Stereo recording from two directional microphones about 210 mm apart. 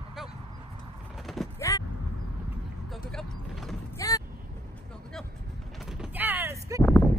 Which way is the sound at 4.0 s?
15° left (ahead or behind).